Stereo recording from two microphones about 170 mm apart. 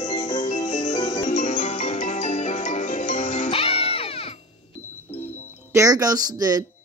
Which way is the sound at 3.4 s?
35° left (ahead or behind).